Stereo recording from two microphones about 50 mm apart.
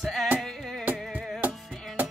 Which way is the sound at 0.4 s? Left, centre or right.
Centre.